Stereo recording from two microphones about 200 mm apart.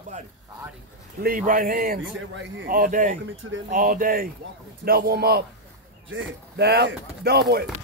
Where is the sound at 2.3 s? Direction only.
65° right (ahead or behind).